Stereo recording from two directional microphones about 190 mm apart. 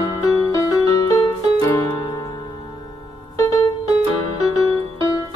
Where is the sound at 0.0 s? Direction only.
20° left (ahead or behind).